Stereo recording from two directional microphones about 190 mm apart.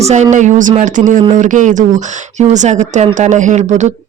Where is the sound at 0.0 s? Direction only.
35° right (ahead or behind).